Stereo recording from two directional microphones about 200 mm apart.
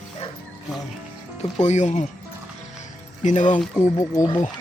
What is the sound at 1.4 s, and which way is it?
Speech, 35° left (ahead or behind).